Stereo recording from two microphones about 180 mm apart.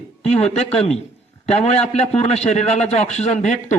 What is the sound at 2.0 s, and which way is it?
A man's voice, 35° left (ahead or behind).